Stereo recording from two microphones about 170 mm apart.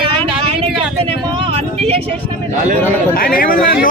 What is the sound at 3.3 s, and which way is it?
Speech, 55° left (ahead or behind).